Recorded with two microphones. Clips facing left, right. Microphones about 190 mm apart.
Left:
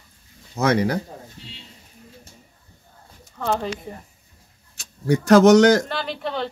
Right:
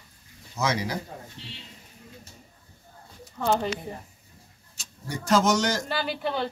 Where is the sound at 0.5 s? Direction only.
60° left (ahead or behind).